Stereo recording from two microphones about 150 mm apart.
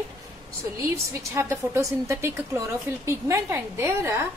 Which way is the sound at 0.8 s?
20° right (ahead or behind).